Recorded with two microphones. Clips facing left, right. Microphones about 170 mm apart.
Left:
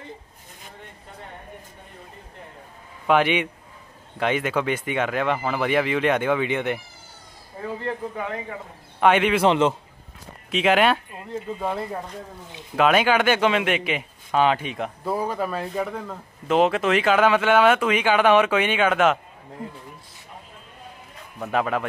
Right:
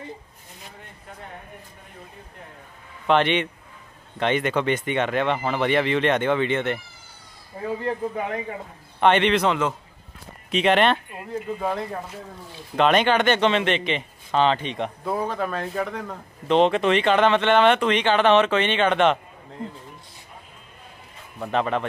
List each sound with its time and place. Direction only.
3.1 s speech: 10° left (ahead or behind)
9.0 s speech: 5° left (ahead or behind)
9.5 s a man's voice: 25° left (ahead or behind)
10.5 s speech: 5° left (ahead or behind)
21.4 s speech: 5° left (ahead or behind)